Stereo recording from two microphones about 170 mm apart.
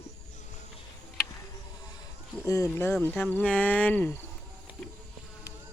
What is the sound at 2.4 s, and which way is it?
Speech, 20° left (ahead or behind).